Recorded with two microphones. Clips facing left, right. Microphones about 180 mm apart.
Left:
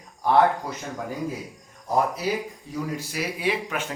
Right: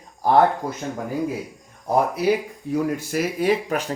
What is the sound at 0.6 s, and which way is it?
Speech, 50° right (ahead or behind).